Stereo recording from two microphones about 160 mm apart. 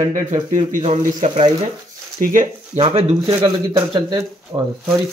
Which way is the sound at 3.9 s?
25° right (ahead or behind).